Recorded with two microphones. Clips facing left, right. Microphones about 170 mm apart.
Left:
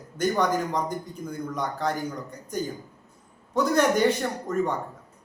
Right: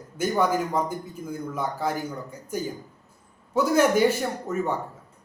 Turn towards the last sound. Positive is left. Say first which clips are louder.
# left 1 dB
turn(degrees=-5)  # may be behind; listen again after turning